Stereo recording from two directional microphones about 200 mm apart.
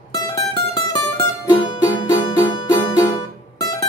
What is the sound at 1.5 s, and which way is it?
Music, 20° left (ahead or behind).